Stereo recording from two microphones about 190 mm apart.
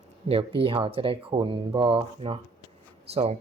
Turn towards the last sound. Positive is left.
turn(degrees=-30)  # may be behind; listen again after turning